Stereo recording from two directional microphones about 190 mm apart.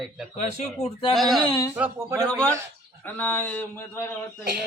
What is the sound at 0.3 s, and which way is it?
Speech, 35° left (ahead or behind).